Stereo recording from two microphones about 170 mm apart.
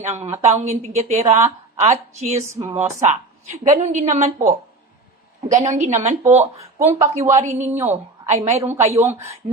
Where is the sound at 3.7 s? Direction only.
45° right (ahead or behind).